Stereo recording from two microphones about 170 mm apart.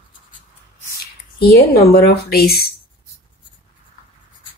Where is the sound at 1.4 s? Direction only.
65° left (ahead or behind).